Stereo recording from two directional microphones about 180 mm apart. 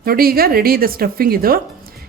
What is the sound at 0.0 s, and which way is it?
A woman's voice, 55° right (ahead or behind).